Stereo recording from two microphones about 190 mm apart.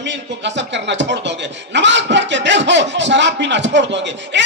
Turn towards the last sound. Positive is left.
turn(degrees=-70)  # may be behind; listen again after turning